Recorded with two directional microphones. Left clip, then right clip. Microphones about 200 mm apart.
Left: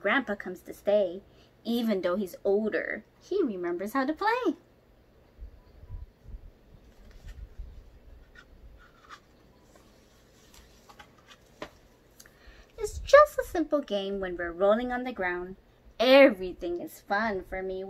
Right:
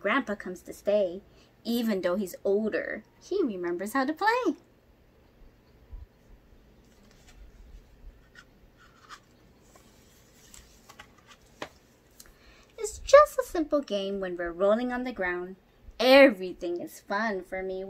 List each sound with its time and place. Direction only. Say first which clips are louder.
0.3 s a woman's voice: even; 10° right (ahead or behind)
12.7 s a woman's voice: right 1 dB; 10° right (ahead or behind)